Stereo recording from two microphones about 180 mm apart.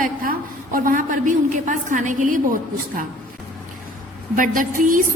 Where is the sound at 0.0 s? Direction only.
50° right (ahead or behind).